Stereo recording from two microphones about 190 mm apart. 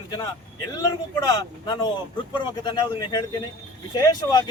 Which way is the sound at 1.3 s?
25° left (ahead or behind).